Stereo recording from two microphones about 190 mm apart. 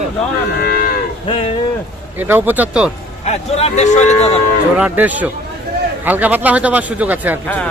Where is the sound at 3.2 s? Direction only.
35° left (ahead or behind).